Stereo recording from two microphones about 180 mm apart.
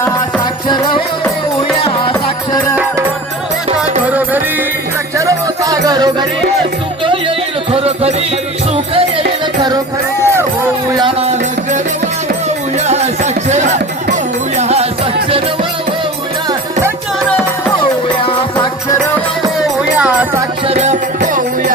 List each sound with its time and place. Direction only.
0.7 s music: 25° left (ahead or behind)
4.0 s music: 10° right (ahead or behind); by 9.2 s 30° right (ahead or behind)
10.2 s speech: 15° right (ahead or behind)
11.2 s music: 35° right (ahead or behind)
12.9 s music: 40° right (ahead or behind)
20.0 s music: 5° right (ahead or behind)
20.7 s music: 40° right (ahead or behind)